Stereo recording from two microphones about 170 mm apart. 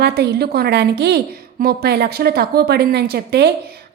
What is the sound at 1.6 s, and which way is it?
A woman's voice, 60° right (ahead or behind).